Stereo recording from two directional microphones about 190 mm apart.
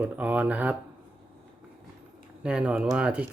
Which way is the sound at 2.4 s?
5° right (ahead or behind).